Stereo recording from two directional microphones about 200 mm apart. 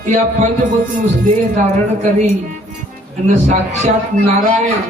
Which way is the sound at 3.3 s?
35° right (ahead or behind).